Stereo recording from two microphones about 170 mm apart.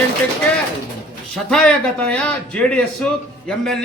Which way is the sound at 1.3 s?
5° left (ahead or behind).